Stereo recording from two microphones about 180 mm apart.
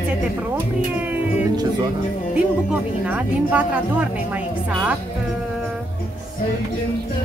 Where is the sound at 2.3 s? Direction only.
5° right (ahead or behind).